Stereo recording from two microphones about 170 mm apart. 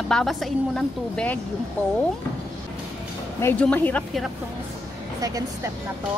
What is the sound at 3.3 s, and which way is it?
Speech, 15° left (ahead or behind).